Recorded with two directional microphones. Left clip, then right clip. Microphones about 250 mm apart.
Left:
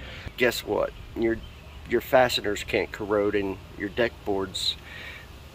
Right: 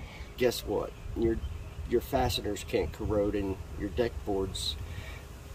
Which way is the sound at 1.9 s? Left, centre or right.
Centre.